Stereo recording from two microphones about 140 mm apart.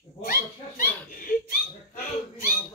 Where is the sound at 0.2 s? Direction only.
90° left.